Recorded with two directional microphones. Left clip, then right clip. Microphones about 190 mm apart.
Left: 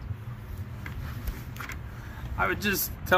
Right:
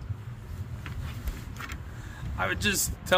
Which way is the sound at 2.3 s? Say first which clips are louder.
Left 1 dB; 15° right (ahead or behind).